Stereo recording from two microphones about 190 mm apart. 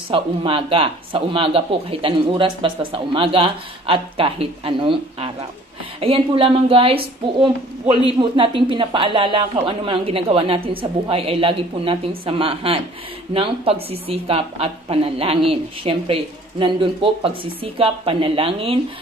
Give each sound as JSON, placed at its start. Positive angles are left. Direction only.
{"t": 0.1, "sound": "speech", "side_deg": -30}
{"t": 8.2, "sound": "speech", "side_deg": -25}